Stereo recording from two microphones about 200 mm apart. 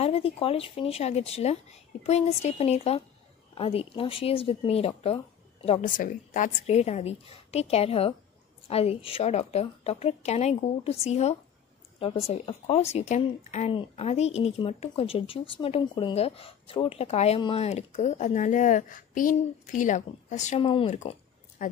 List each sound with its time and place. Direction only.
0.0 s a woman's voice: 30° left (ahead or behind)